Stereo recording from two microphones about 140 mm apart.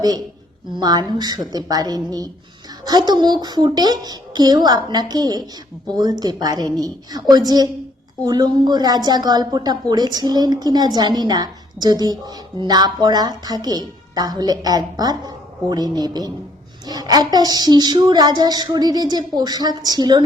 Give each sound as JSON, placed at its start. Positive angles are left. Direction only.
{"t": 0.8, "sound": "a woman's voice", "side_deg": -30}